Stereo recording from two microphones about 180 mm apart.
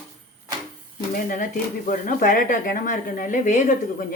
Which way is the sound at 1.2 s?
50° left (ahead or behind).